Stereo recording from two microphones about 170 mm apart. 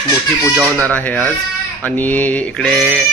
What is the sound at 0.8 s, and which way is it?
Fowl, 10° left (ahead or behind).